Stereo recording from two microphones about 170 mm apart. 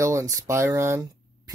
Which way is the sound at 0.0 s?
15° right (ahead or behind).